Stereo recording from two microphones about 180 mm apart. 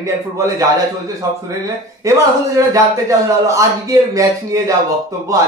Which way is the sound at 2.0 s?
20° right (ahead or behind).